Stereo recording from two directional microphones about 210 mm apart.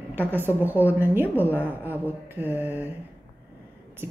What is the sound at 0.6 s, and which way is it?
A woman's voice, 10° right (ahead or behind).